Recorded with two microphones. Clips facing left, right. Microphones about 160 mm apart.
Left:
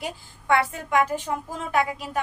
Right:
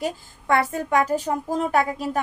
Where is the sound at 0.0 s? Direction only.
40° right (ahead or behind).